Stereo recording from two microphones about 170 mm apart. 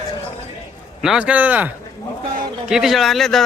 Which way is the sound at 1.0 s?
5° right (ahead or behind).